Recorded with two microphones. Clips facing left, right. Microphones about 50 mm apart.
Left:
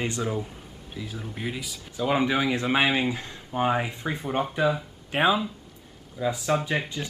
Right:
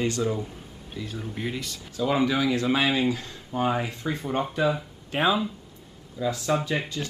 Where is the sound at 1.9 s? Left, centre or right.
Left.